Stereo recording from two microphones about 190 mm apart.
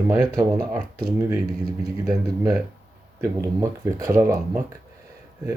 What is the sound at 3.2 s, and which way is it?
Speech, 15° right (ahead or behind).